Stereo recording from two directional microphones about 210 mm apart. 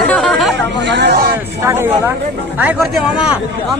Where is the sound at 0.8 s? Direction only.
55° right (ahead or behind).